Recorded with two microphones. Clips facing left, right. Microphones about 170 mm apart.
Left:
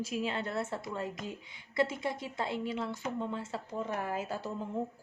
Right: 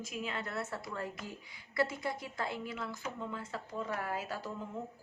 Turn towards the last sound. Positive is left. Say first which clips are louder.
# left 3 dB
turn(degrees=30)  # may be behind; listen again after turning